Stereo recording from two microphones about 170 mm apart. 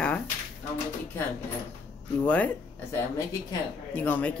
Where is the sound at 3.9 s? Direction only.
10° left (ahead or behind).